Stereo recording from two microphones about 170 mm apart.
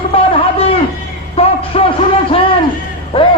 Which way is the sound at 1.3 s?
35° left (ahead or behind).